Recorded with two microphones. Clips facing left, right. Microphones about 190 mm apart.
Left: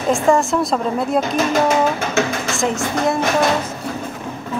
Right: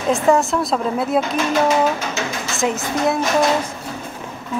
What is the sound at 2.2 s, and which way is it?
Speech, 55° left (ahead or behind).